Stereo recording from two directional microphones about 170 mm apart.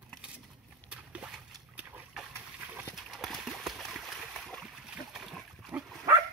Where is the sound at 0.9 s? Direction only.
5° right (ahead or behind).